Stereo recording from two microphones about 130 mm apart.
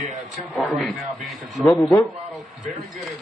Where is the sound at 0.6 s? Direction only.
Centre (ahead or behind).